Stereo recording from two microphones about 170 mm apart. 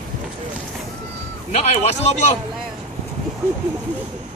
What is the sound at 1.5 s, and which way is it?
Speech, 40° left (ahead or behind).